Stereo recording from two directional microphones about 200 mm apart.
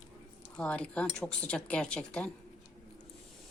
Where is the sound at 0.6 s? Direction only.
5° left (ahead or behind).